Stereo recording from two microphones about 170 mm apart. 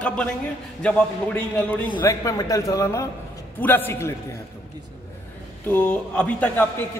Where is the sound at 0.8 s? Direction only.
5° left (ahead or behind).